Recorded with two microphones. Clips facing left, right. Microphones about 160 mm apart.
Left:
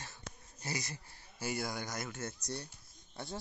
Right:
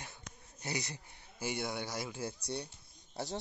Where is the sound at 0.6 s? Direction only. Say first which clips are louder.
Right 1 dB; 20° right (ahead or behind).